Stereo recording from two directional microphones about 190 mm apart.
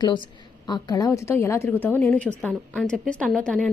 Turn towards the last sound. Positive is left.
turn(degrees=5)  # may be behind; listen again after turning